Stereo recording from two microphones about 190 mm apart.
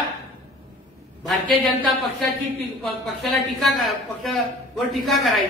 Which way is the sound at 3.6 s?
Centre (ahead or behind).